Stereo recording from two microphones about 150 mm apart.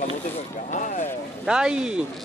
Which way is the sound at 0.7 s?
55° left (ahead or behind).